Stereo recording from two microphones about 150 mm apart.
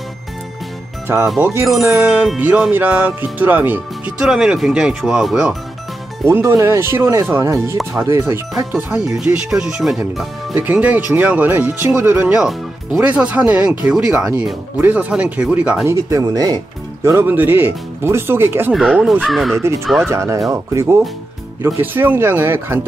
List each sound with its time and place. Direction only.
1.4 s speech: 15° right (ahead or behind)
1.7 s music: centre (ahead or behind)
6.2 s speech: 15° right (ahead or behind)
15.9 s speech: 20° right (ahead or behind)
18.7 s music: 5° right (ahead or behind)
19.5 s speech: 15° right (ahead or behind)